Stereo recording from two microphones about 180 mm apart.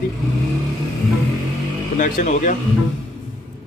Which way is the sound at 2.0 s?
45° left (ahead or behind).